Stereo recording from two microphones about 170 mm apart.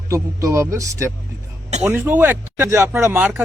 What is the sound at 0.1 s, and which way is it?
Speech, 15° right (ahead or behind).